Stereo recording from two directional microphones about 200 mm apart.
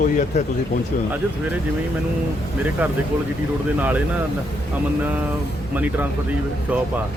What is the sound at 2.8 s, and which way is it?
Speech, 10° right (ahead or behind).